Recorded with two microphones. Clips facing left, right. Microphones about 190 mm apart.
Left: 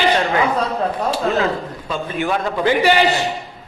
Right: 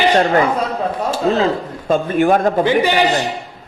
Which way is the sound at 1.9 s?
50° right (ahead or behind).